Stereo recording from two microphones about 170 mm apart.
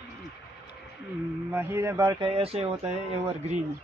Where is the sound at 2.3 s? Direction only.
35° right (ahead or behind).